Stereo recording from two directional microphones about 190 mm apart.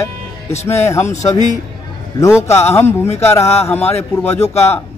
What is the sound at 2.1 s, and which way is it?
A man's voice, 15° left (ahead or behind).